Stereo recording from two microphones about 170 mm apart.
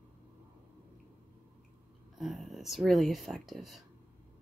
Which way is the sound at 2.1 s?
Centre (ahead or behind).